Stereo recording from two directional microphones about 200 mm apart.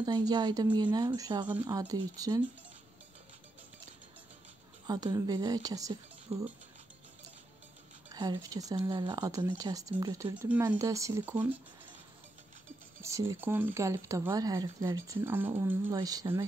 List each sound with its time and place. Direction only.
0.0 s speech: 20° right (ahead or behind)
4.8 s speech: 20° right (ahead or behind)
6.3 s speech: 30° right (ahead or behind)
8.1 s speech: 20° right (ahead or behind)
13.0 s speech: 15° right (ahead or behind)